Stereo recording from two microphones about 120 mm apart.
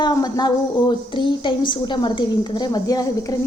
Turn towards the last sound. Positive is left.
turn(degrees=30)  # may be behind; listen again after turning